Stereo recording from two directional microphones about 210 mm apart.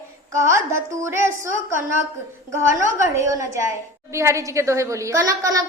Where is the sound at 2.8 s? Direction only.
15° right (ahead or behind).